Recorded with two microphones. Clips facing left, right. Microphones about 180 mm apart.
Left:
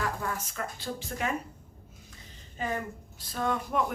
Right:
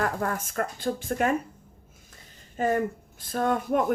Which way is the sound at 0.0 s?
55° right (ahead or behind).